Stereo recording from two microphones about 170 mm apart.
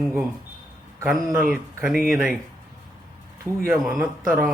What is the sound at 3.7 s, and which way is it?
Speech, centre (ahead or behind).